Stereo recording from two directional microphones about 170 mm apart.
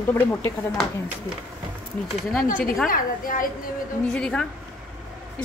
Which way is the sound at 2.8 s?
55° left (ahead or behind).